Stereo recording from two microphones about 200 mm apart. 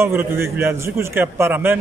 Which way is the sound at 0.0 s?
10° right (ahead or behind).